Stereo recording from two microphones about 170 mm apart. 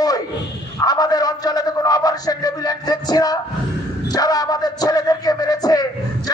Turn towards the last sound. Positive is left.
turn(degrees=20)  # may be behind; listen again after turning